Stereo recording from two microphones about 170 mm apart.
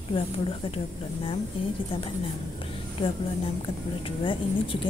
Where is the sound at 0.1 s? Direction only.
35° left (ahead or behind).